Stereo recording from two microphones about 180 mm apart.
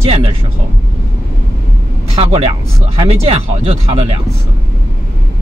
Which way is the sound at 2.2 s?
35° right (ahead or behind).